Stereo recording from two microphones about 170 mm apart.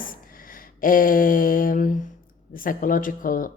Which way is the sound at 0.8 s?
55° left (ahead or behind).